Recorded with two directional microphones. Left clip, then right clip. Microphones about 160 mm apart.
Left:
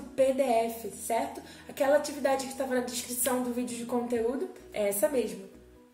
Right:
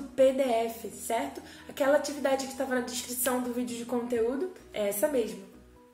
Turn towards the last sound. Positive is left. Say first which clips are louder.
# even
turn(degrees=0)  # may be behind; listen again after turning